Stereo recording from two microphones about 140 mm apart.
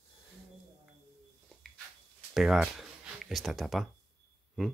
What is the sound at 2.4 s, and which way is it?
Speech, centre (ahead or behind).